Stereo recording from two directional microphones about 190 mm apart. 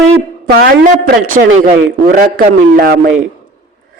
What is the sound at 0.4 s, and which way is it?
A woman's voice, 55° right (ahead or behind).